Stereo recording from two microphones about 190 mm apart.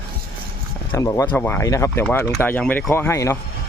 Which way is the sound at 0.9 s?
15° left (ahead or behind).